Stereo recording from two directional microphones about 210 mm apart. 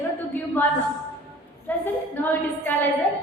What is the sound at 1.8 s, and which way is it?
Speech, 10° left (ahead or behind).